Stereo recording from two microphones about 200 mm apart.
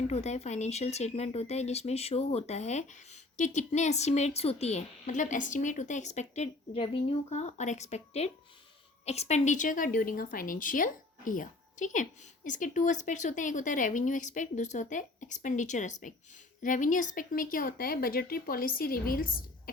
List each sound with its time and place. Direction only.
0.1 s a woman's voice: 30° left (ahead or behind)